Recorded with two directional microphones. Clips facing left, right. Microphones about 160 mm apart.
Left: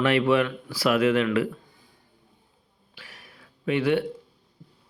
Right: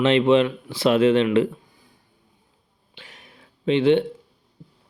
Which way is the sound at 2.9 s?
20° right (ahead or behind).